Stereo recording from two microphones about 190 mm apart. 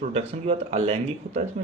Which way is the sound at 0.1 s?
35° right (ahead or behind).